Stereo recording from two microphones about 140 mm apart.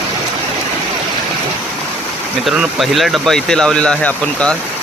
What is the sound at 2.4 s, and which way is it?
Speech, centre (ahead or behind).